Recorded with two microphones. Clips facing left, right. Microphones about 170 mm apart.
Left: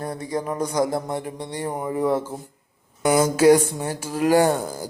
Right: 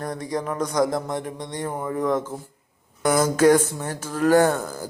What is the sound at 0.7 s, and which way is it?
Speech, 30° left (ahead or behind).